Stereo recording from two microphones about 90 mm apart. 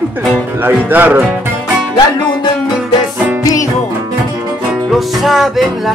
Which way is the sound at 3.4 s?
40° left (ahead or behind).